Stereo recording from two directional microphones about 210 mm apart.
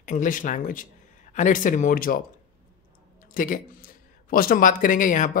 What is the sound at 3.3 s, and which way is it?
Speech, 40° left (ahead or behind).